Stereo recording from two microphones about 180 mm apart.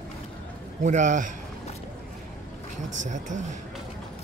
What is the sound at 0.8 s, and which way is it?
Speech, 45° right (ahead or behind).